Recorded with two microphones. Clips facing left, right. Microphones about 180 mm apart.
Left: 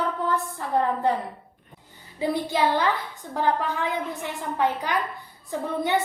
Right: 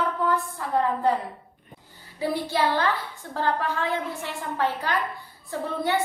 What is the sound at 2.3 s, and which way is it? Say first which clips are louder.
A woman's voice: left 1 dB; 20° left (ahead or behind).